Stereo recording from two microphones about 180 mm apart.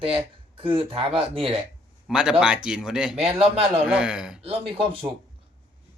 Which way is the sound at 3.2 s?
35° right (ahead or behind).